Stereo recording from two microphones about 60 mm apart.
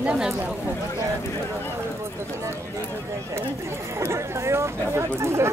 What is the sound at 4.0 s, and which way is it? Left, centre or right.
Speech, right.